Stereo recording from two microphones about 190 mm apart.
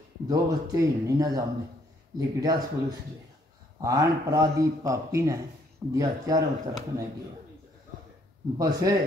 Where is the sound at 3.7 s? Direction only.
20° right (ahead or behind).